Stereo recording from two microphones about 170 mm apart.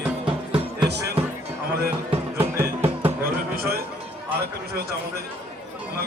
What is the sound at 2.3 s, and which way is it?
Music, 15° right (ahead or behind).